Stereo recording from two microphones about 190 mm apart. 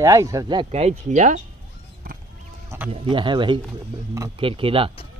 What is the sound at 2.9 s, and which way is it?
Speech, 25° right (ahead or behind).